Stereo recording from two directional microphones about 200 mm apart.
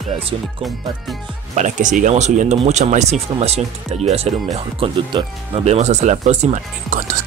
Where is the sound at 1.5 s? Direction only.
40° right (ahead or behind).